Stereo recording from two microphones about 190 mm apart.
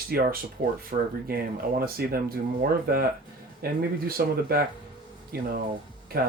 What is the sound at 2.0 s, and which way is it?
Speech, 55° right (ahead or behind).